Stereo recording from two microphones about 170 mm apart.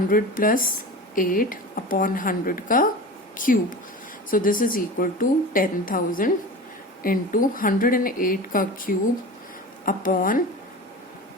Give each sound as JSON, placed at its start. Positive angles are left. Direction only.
{"t": 0.1, "sound": "a woman's voice", "side_deg": 55}